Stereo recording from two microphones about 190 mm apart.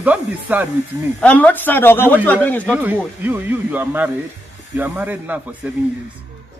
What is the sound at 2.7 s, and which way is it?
Speech, 10° right (ahead or behind).